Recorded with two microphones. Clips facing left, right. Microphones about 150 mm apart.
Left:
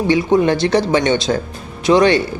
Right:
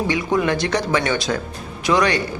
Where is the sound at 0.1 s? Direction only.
30° left (ahead or behind).